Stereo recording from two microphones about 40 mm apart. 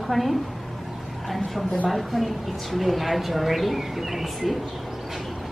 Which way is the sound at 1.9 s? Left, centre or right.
Centre.